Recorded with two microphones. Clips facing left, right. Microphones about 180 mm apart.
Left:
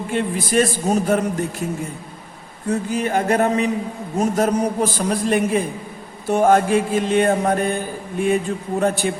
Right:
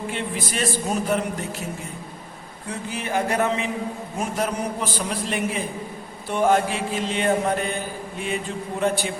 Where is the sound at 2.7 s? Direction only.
45° left (ahead or behind).